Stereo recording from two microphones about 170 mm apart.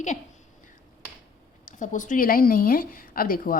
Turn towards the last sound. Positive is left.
turn(degrees=55)  # may be behind; listen again after turning